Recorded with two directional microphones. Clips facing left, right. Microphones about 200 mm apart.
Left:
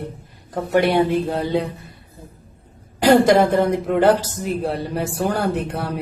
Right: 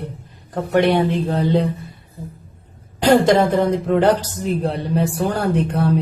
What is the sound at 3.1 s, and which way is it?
Speech, 5° left (ahead or behind).